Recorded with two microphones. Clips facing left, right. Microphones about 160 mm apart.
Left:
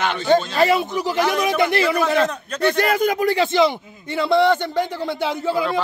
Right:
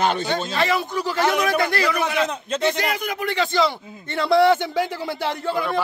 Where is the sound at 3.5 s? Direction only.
20° left (ahead or behind).